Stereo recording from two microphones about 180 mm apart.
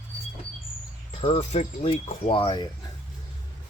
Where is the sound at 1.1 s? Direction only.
30° left (ahead or behind).